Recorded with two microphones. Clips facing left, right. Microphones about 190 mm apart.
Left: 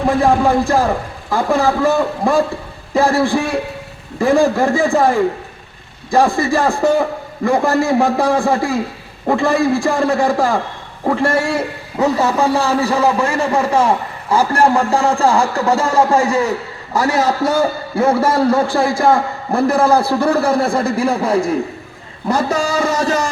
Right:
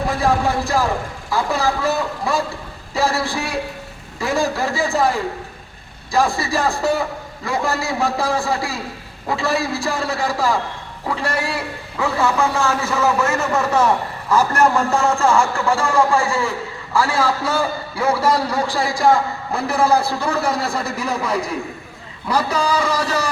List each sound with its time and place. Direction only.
0.2 s a man's voice: 50° left (ahead or behind)
16.1 s a man's voice: 20° left (ahead or behind)
17.2 s a man's voice: 45° left (ahead or behind)